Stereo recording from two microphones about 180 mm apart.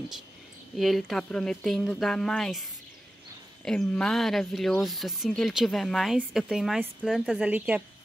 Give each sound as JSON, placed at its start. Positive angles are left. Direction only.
{"t": 0.7, "sound": "speech", "side_deg": 0}
{"t": 3.6, "sound": "speech", "side_deg": 5}